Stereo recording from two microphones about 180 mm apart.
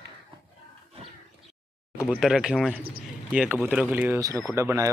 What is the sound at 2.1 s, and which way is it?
Speech, 5° right (ahead or behind).